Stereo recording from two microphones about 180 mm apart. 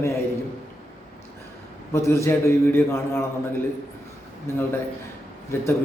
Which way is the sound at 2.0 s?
15° left (ahead or behind).